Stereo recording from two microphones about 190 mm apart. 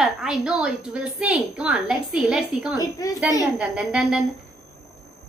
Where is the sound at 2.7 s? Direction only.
20° left (ahead or behind).